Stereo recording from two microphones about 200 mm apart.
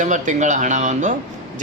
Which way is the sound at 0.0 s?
40° right (ahead or behind).